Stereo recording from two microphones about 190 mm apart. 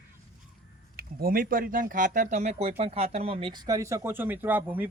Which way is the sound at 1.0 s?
50° right (ahead or behind).